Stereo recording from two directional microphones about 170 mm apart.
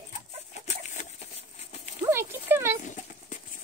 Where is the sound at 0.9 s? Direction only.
45° left (ahead or behind).